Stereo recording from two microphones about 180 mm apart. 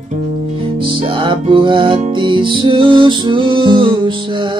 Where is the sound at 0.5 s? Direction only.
30° right (ahead or behind).